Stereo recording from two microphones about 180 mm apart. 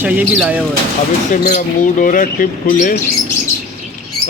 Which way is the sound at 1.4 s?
45° left (ahead or behind).